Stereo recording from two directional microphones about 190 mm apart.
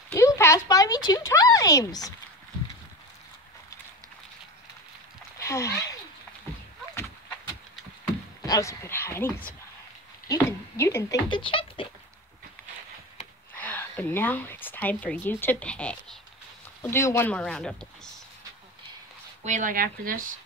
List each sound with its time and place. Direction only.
0.1 s speech: 15° left (ahead or behind)
5.4 s speech: 15° left (ahead or behind)
8.5 s speech: 15° left (ahead or behind)
10.2 s a sound: 15° left (ahead or behind)
11.2 s speech: 25° left (ahead or behind)
13.6 s speech: 10° left (ahead or behind)
19.4 s speech: 40° right (ahead or behind)